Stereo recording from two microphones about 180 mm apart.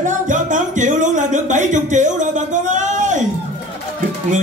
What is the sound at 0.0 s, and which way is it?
Music, 45° right (ahead or behind).